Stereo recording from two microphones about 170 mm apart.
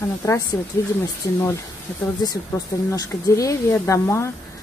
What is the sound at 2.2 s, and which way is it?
Speech, 20° left (ahead or behind).